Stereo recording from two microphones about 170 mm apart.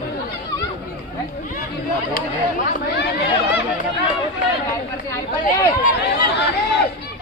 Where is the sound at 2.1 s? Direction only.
50° left (ahead or behind).